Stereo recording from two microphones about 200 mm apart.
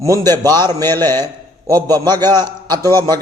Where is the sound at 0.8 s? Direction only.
10° left (ahead or behind).